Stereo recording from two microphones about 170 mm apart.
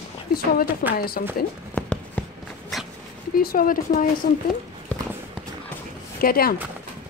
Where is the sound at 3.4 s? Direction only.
60° left (ahead or behind).